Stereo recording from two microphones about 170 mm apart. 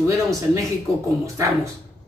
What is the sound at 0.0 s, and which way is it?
Speech, 20° right (ahead or behind).